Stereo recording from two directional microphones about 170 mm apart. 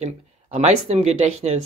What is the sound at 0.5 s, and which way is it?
Speech, 40° right (ahead or behind).